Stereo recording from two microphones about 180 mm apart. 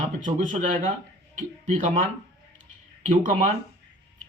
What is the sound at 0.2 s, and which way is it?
Speech, 45° right (ahead or behind).